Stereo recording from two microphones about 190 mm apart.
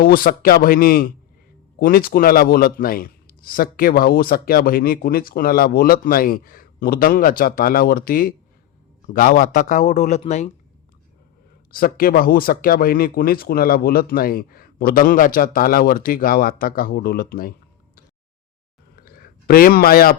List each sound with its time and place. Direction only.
0.0 s a man's voice: 50° left (ahead or behind)
11.7 s a man's voice: 50° left (ahead or behind)
18.9 s a sound: 50° left (ahead or behind)